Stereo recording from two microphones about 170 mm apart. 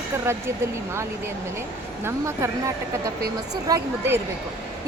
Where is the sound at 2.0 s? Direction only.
15° right (ahead or behind).